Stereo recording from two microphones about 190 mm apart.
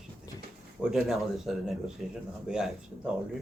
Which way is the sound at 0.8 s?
Centre (ahead or behind).